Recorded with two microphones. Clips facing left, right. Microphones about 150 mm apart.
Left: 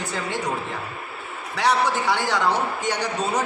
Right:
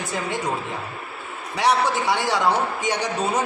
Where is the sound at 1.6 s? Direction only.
15° right (ahead or behind).